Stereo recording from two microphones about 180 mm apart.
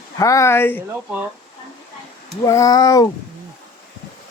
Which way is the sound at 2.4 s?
15° left (ahead or behind).